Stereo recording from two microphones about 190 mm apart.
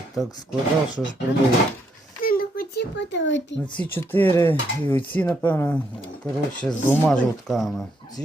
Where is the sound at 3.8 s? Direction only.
10° left (ahead or behind).